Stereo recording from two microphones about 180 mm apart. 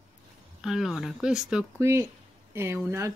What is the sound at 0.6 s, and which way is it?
Speech, centre (ahead or behind).